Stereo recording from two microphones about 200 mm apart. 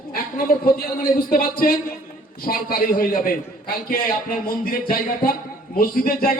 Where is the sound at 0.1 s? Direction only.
45° left (ahead or behind).